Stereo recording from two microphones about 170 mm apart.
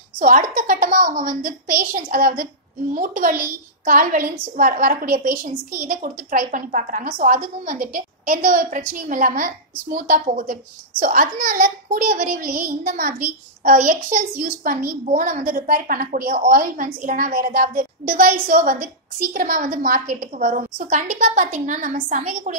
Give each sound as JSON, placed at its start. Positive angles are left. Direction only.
{"t": 0.2, "sound": "a woman's voice", "side_deg": -55}